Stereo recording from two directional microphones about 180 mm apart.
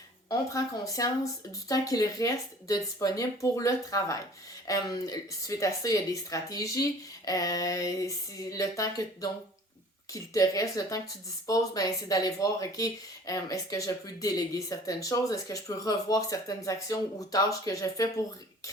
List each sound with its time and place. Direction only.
0.3 s speech: 20° left (ahead or behind)